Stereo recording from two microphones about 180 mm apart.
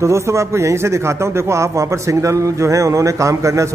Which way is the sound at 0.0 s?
15° right (ahead or behind).